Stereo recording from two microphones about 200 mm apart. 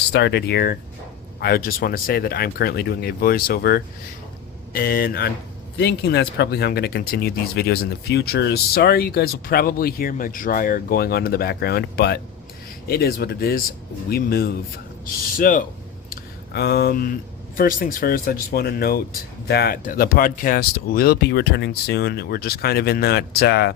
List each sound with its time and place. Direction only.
0.1 s speech: 55° left (ahead or behind)
16.0 s a sound: 55° left (ahead or behind)
17.6 s speech: 45° left (ahead or behind)